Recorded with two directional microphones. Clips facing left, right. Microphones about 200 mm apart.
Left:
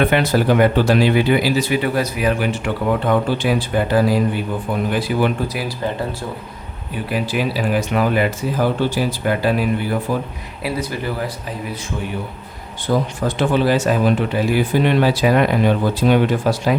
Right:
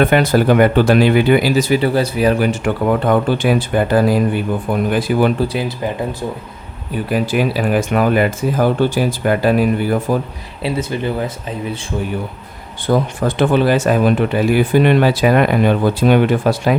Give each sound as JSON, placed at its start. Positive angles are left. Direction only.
{"t": 0.0, "sound": "speech", "side_deg": -45}
{"t": 3.1, "sound": "speech", "side_deg": -50}
{"t": 5.5, "sound": "speech", "side_deg": -20}
{"t": 7.1, "sound": "speech", "side_deg": -50}
{"t": 10.6, "sound": "speech", "side_deg": -25}
{"t": 12.9, "sound": "speech", "side_deg": -55}